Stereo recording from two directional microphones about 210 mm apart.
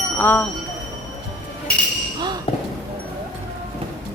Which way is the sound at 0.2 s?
10° left (ahead or behind).